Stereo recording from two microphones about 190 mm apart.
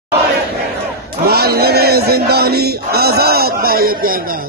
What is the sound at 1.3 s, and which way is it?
Music, 55° right (ahead or behind).